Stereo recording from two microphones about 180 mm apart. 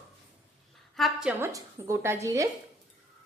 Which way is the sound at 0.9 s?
Centre (ahead or behind).